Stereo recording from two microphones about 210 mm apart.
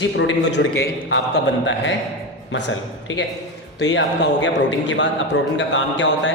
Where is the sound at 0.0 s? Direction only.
60° left (ahead or behind).